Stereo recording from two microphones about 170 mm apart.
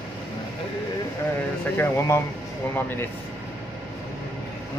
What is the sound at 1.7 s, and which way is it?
Speech, 15° left (ahead or behind).